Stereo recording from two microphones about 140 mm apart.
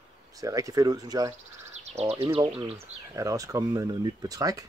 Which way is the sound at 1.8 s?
50° right (ahead or behind).